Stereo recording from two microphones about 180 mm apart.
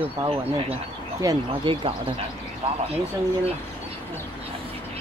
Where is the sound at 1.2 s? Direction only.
30° right (ahead or behind).